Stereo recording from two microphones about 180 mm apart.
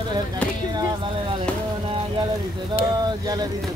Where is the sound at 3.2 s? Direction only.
20° right (ahead or behind).